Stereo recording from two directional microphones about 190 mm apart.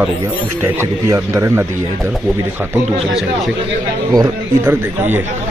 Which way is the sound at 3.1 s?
Centre (ahead or behind).